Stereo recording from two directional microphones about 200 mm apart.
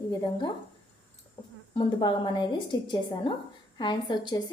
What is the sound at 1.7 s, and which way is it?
Speech, 25° left (ahead or behind).